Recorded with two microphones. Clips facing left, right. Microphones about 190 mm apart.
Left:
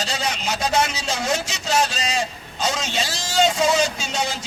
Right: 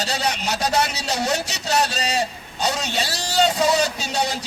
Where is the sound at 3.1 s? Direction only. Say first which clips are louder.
Even; 65° right (ahead or behind).